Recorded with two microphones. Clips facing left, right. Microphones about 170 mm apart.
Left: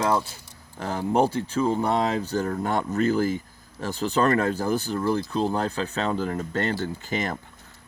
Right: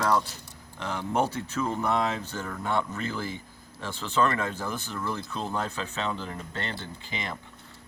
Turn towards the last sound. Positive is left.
turn(degrees=45)  # may be behind; listen again after turning